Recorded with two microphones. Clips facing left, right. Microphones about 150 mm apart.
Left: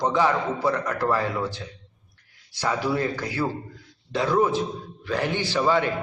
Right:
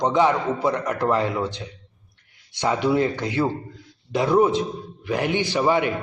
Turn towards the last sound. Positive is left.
turn(degrees=-15)  # may be behind; listen again after turning